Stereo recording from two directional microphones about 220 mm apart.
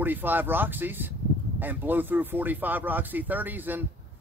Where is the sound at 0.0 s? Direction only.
10° right (ahead or behind).